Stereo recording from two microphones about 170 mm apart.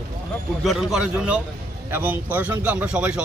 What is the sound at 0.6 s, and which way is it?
Speech, centre (ahead or behind).